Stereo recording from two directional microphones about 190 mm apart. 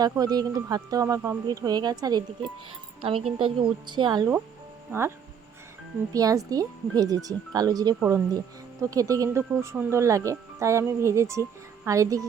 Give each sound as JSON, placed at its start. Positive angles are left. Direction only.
{"t": 0.0, "sound": "speech", "side_deg": -20}
{"t": 4.9, "sound": "speech", "side_deg": -15}
{"t": 6.1, "sound": "speech", "side_deg": -20}